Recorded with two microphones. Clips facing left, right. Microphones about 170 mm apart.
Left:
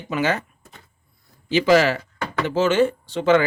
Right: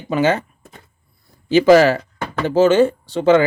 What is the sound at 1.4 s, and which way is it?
Speech, 45° right (ahead or behind).